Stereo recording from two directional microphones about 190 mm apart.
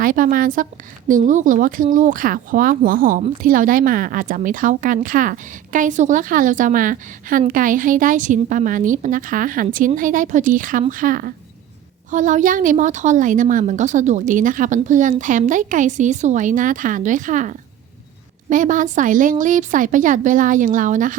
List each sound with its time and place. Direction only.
0.0 s a woman's voice: 45° right (ahead or behind)